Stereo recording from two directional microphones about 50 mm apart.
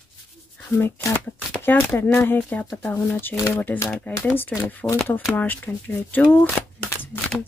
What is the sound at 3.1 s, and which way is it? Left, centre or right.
Speech, left.